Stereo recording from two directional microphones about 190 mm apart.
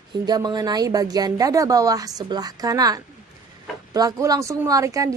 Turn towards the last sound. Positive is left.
turn(degrees=-15)  # may be behind; listen again after turning